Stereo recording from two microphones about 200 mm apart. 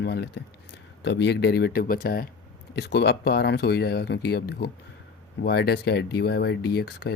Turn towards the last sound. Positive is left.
turn(degrees=55)  # may be behind; listen again after turning